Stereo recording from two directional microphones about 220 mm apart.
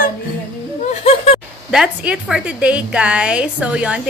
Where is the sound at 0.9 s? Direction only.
30° left (ahead or behind).